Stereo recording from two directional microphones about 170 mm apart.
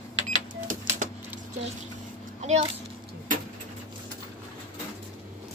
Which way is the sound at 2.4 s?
40° right (ahead or behind).